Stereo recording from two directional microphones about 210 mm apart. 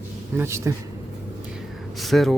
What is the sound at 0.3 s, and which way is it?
Speech, 10° right (ahead or behind).